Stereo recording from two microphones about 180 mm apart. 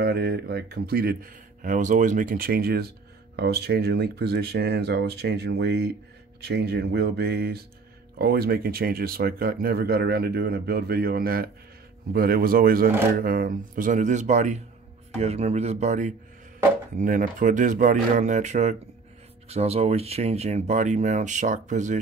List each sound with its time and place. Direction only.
0.0 s speech: 60° right (ahead or behind); by 21.9 s 45° right (ahead or behind)